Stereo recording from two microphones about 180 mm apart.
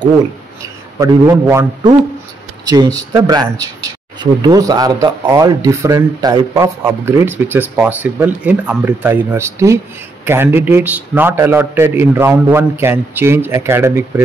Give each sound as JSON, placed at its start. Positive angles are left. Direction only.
{"t": 0.9, "sound": "a man's voice", "side_deg": -15}
{"t": 2.7, "sound": "a man's voice", "side_deg": -20}